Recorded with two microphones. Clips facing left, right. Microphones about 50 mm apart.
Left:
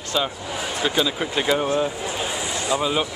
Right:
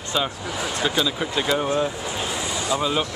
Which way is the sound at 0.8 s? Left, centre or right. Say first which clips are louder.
Left 1 dB; centre.